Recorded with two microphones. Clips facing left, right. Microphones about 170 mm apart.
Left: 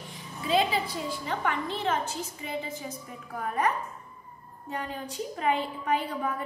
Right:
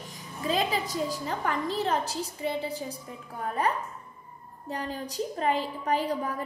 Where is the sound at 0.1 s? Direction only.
40° right (ahead or behind).